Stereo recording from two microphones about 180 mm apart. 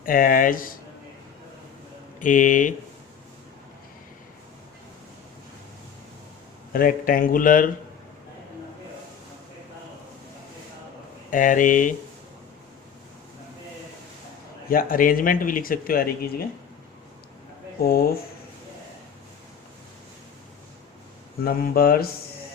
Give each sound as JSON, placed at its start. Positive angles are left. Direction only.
{"t": 0.0, "sound": "speech", "side_deg": 50}
{"t": 2.1, "sound": "speech", "side_deg": 45}
{"t": 6.7, "sound": "speech", "side_deg": 50}
{"t": 11.3, "sound": "speech", "side_deg": 45}
{"t": 14.7, "sound": "speech", "side_deg": 50}
{"t": 17.8, "sound": "speech", "side_deg": 55}
{"t": 21.4, "sound": "speech", "side_deg": 55}